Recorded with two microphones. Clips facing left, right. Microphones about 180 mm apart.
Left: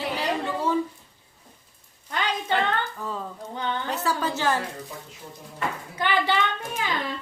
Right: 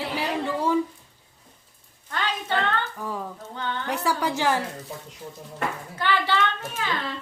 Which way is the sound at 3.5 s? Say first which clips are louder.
Left 3 dB; 15° left (ahead or behind).